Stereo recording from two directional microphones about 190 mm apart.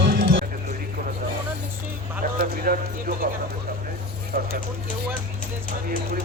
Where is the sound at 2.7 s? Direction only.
50° right (ahead or behind).